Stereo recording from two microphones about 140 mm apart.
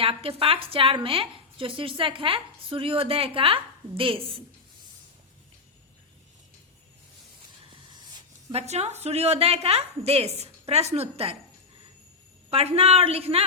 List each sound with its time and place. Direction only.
0.0 s a woman's voice: 45° right (ahead or behind)
8.5 s a woman's voice: 50° right (ahead or behind)
12.5 s a woman's voice: 50° right (ahead or behind)